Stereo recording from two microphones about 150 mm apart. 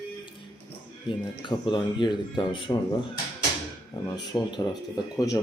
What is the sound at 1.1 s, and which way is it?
Speech, 30° left (ahead or behind).